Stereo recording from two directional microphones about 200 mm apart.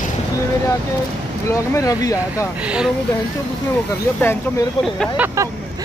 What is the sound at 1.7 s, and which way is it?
Speech, 15° left (ahead or behind).